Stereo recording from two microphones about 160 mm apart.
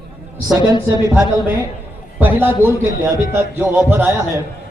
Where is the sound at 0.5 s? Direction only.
20° right (ahead or behind).